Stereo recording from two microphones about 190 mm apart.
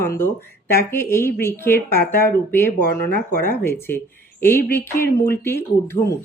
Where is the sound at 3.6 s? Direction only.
10° left (ahead or behind).